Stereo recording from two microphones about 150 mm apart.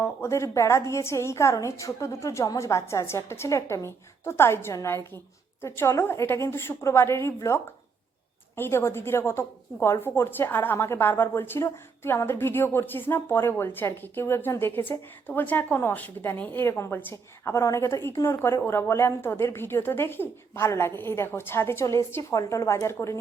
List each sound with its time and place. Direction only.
0.0 s a woman's voice: 20° left (ahead or behind)